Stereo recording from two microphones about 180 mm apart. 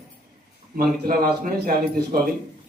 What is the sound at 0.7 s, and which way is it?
A man's voice, 55° right (ahead or behind).